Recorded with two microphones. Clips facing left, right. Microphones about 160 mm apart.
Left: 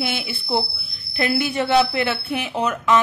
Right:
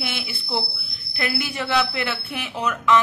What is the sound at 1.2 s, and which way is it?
Speech, 25° left (ahead or behind).